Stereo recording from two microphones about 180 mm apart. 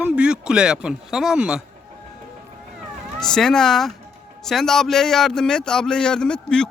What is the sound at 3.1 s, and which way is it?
Speech, 5° left (ahead or behind).